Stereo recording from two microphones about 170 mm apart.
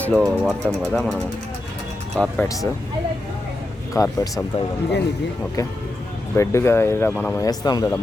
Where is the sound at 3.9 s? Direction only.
20° left (ahead or behind).